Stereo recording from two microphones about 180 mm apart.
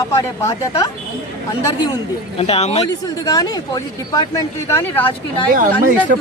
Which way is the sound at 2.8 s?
20° left (ahead or behind).